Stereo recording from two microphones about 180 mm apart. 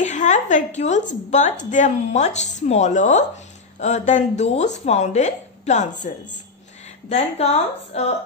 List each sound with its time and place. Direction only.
0.0 s a woman's voice: 40° left (ahead or behind)
7.1 s speech: 35° left (ahead or behind)